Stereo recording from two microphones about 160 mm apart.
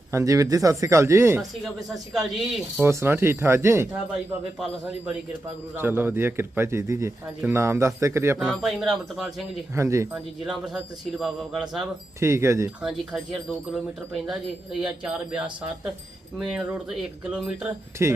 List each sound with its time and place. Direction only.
0.1 s speech: 20° right (ahead or behind)
2.1 s speech: 5° right (ahead or behind)
2.8 s a man's voice: 15° right (ahead or behind)
5.7 s a man's voice: 15° right (ahead or behind)
8.4 s speech: centre (ahead or behind)
9.7 s a man's voice: 20° right (ahead or behind)
10.2 s speech: 5° right (ahead or behind)
12.2 s a man's voice: 15° right (ahead or behind)
12.8 s speech: centre (ahead or behind)
18.0 s a man's voice: 15° right (ahead or behind)